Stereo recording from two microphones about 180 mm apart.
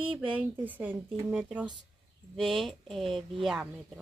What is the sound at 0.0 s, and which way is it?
Speech, 30° right (ahead or behind).